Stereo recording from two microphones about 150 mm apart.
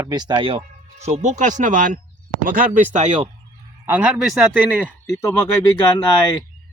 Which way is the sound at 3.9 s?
10° right (ahead or behind).